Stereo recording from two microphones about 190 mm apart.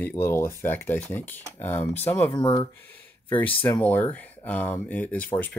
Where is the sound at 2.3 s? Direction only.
20° left (ahead or behind).